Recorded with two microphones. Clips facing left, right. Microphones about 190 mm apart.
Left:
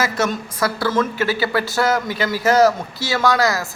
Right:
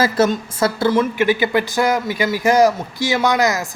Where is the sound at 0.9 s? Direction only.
15° right (ahead or behind).